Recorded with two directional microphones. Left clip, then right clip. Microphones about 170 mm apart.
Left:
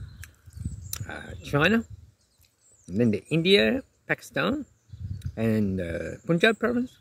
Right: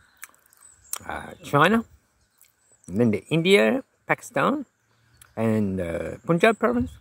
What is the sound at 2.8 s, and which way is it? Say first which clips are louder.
Speech: right 3 dB; centre (ahead or behind).